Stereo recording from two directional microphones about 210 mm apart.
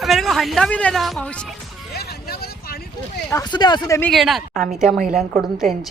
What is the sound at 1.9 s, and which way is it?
Vehicle, 50° left (ahead or behind).